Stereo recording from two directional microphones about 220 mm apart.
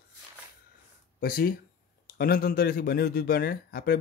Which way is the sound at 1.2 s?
40° left (ahead or behind).